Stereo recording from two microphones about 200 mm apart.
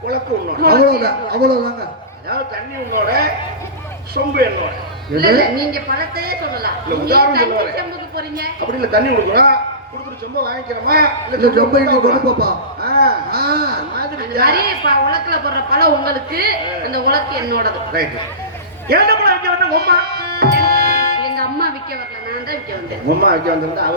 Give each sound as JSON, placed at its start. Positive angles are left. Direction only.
{"t": 0.6, "sound": "a man's voice", "side_deg": -50}
{"t": 5.1, "sound": "a man's voice", "side_deg": -50}
{"t": 18.9, "sound": "music", "side_deg": -50}
{"t": 23.0, "sound": "a man's voice", "side_deg": -50}